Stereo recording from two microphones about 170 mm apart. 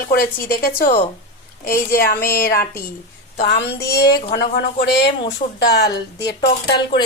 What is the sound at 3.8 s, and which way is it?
Speech, 70° left (ahead or behind).